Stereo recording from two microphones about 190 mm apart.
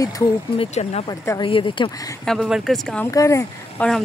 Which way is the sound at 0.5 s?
35° left (ahead or behind).